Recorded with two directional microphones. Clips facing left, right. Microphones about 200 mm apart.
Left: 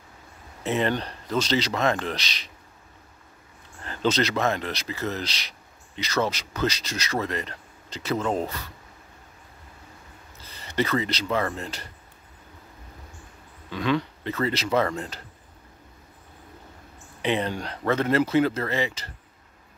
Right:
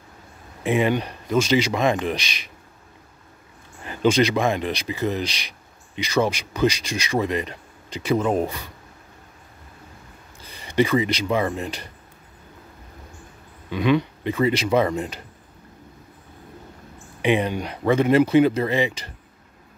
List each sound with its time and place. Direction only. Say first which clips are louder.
0.7 s speech: right 4 dB; 10° right (ahead or behind)
3.8 s speech: right 5 dB; 15° right (ahead or behind)
10.4 s speech: right 6 dB; 15° right (ahead or behind)
13.7 s speech: right 5 dB; 15° right (ahead or behind)
17.2 s speech: right 5 dB; 15° right (ahead or behind)